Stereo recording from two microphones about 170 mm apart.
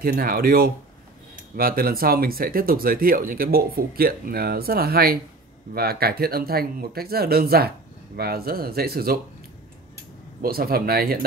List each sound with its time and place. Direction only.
0.0 s speech: 60° right (ahead or behind)
10.4 s speech: 60° right (ahead or behind)